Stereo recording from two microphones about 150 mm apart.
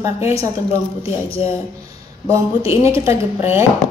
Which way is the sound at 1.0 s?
40° left (ahead or behind).